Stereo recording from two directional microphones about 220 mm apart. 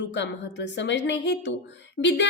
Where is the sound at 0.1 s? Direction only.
55° left (ahead or behind).